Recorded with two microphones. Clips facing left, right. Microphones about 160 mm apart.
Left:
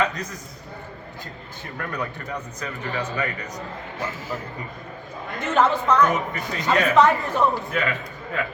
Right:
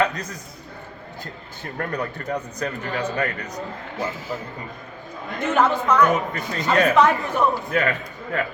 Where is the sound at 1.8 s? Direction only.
35° right (ahead or behind).